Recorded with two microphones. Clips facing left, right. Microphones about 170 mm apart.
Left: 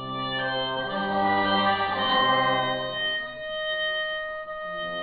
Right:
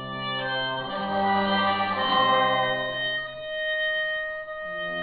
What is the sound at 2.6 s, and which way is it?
Music, centre (ahead or behind).